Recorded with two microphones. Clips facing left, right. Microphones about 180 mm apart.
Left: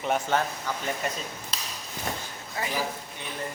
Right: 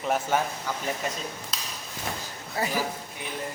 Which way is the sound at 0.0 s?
5° right (ahead or behind).